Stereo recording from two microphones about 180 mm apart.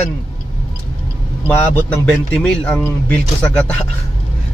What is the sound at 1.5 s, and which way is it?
Speech, 10° left (ahead or behind).